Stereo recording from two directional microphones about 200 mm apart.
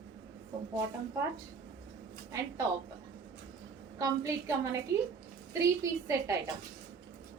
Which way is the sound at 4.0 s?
15° right (ahead or behind).